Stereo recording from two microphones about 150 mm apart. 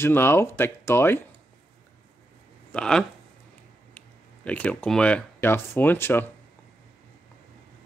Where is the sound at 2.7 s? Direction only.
5° left (ahead or behind).